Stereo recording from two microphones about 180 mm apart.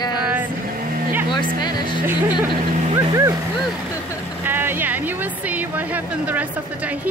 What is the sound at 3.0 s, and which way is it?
Speech, 20° right (ahead or behind).